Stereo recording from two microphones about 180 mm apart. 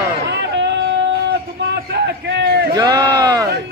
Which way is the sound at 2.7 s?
20° right (ahead or behind).